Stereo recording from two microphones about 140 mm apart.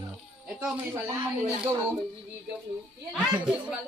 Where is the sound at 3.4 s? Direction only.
5° right (ahead or behind).